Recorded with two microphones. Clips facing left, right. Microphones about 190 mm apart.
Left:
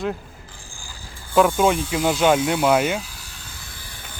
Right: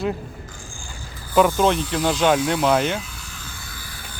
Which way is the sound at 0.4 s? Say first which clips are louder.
Right 4 dB; 35° left (ahead or behind).